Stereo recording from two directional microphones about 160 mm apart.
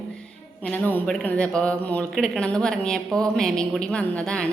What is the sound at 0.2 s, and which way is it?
Music, 5° left (ahead or behind).